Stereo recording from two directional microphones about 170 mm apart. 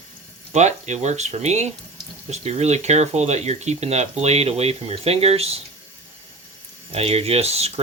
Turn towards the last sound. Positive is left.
turn(degrees=-35)  # may be behind; listen again after turning